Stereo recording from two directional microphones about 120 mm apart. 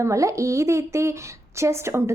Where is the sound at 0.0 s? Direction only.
25° right (ahead or behind).